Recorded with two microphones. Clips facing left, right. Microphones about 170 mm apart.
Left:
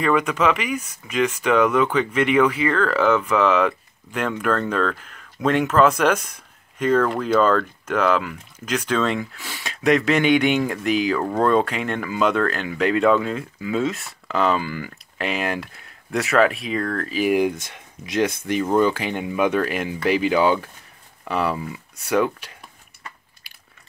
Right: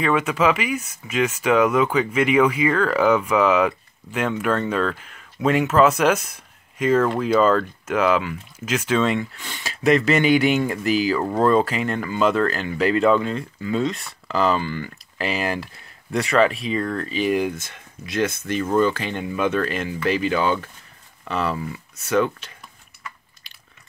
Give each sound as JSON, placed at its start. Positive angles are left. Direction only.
{"t": 0.0, "sound": "speech", "side_deg": -5}
{"t": 23.5, "sound": "biting", "side_deg": 10}